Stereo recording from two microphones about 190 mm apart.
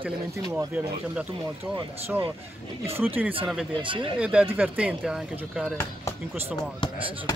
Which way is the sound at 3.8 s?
25° right (ahead or behind).